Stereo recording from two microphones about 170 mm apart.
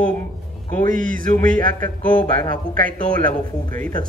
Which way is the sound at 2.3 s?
55° right (ahead or behind).